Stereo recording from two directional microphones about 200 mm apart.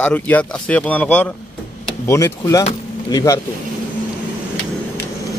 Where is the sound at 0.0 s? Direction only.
5° left (ahead or behind).